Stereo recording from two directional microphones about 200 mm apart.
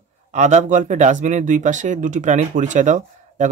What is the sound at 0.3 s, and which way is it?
Speech, 35° right (ahead or behind).